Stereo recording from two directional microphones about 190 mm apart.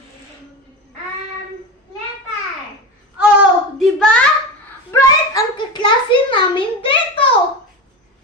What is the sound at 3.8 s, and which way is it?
Hands, 5° left (ahead or behind).